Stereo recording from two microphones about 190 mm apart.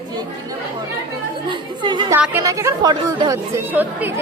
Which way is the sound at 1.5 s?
25° right (ahead or behind).